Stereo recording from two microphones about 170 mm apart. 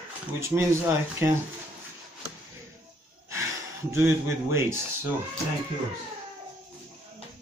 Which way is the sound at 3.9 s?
15° right (ahead or behind).